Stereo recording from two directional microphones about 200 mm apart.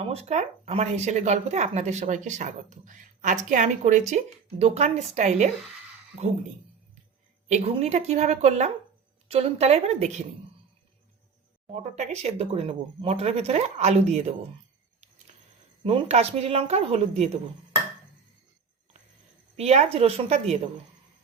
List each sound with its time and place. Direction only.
0.0 s speech: 30° right (ahead or behind)
7.4 s speech: 35° right (ahead or behind)
11.7 s speech: 35° right (ahead or behind)
15.8 s speech: 30° right (ahead or behind)
19.5 s speech: 35° right (ahead or behind)